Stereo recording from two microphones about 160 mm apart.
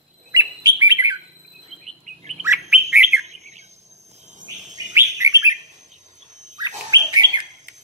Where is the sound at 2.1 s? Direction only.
50° right (ahead or behind).